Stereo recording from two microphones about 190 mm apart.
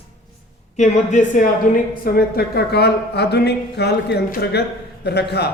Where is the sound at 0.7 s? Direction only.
40° left (ahead or behind).